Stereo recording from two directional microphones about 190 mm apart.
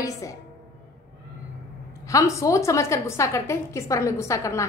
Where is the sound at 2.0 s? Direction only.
15° left (ahead or behind).